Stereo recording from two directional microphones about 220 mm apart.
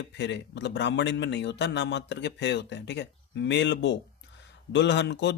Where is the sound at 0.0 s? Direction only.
55° left (ahead or behind).